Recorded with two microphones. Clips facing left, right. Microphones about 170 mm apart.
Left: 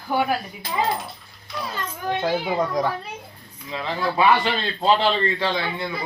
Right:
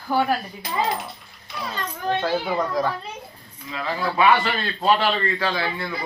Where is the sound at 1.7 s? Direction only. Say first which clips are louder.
Right 2 dB; 15° left (ahead or behind).